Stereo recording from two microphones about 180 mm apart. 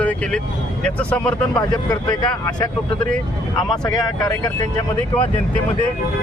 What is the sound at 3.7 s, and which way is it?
Speech, 20° left (ahead or behind).